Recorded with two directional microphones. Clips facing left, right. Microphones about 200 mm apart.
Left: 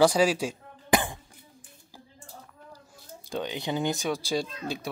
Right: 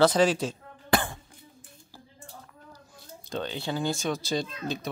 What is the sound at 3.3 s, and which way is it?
Speech, 15° left (ahead or behind).